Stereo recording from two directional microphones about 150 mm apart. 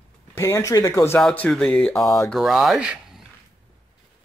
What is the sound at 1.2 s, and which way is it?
Speech, 5° left (ahead or behind).